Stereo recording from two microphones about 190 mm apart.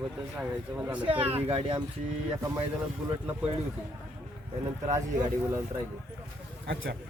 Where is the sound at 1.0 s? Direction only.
30° right (ahead or behind).